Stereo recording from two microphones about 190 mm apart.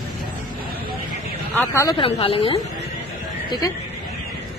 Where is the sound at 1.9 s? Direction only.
30° left (ahead or behind).